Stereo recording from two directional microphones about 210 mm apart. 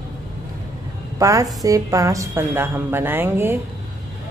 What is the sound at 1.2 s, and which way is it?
A woman's voice, 15° right (ahead or behind).